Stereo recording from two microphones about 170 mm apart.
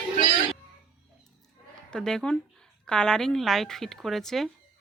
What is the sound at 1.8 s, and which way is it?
Speech, 5° left (ahead or behind).